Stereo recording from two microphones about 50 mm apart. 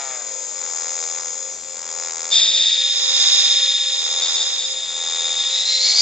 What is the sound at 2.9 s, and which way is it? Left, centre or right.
Alarm, right.